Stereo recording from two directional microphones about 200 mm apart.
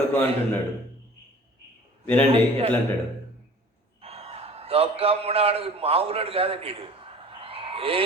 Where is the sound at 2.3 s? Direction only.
25° right (ahead or behind).